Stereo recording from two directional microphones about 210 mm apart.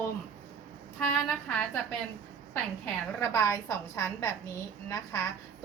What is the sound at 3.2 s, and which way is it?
A woman's voice, 15° left (ahead or behind).